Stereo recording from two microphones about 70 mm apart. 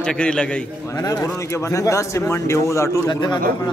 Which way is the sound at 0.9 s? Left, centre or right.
Left.